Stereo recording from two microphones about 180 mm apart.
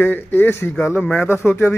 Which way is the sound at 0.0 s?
10° left (ahead or behind).